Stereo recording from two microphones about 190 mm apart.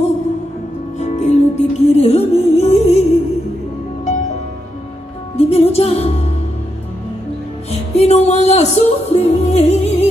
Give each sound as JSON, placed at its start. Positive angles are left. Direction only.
{"t": 0.9, "sound": "music", "side_deg": 35}
{"t": 5.4, "sound": "music", "side_deg": 30}
{"t": 7.7, "sound": "music", "side_deg": 35}